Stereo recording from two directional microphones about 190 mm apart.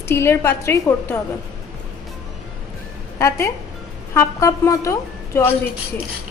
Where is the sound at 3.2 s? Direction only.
15° left (ahead or behind).